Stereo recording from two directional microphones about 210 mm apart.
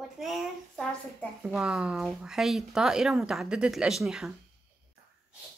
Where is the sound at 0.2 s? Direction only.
Centre (ahead or behind).